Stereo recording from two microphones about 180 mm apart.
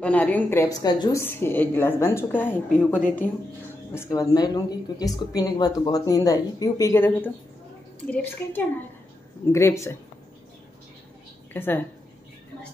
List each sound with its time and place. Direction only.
0.0 s a woman's voice: 10° left (ahead or behind)
1.2 s a woman's voice: 10° left (ahead or behind)
11.5 s a woman's voice: 10° left (ahead or behind)